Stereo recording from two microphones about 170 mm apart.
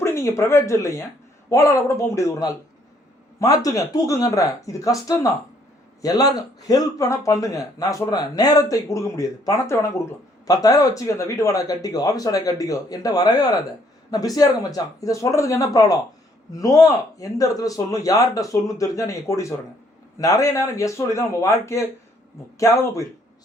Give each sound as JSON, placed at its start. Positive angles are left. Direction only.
{"t": 0.0, "sound": "a man's voice", "side_deg": 15}